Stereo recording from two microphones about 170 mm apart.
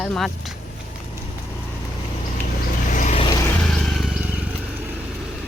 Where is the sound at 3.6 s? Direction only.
5° left (ahead or behind).